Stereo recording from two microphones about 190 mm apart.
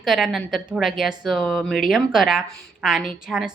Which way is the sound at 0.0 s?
Centre (ahead or behind).